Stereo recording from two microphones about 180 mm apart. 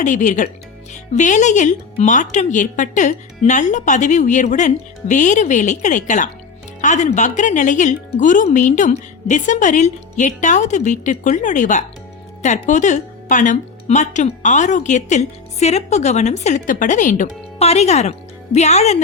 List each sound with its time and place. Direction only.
0.0 s a woman's voice: 45° left (ahead or behind)